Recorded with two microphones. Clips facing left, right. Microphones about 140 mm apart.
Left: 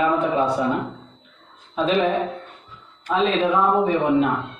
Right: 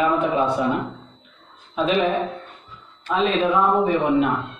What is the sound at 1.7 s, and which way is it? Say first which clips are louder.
Speech: even; 35° left (ahead or behind).